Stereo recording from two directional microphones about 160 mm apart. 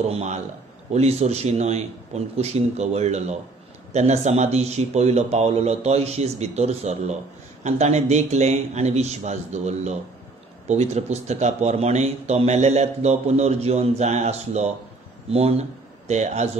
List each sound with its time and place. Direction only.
0.1 s a man's voice: 45° right (ahead or behind)